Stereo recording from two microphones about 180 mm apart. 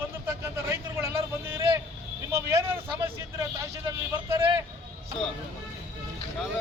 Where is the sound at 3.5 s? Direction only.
15° right (ahead or behind).